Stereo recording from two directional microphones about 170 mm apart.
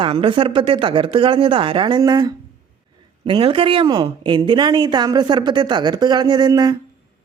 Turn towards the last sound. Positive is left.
turn(degrees=-25)  # may be behind; listen again after turning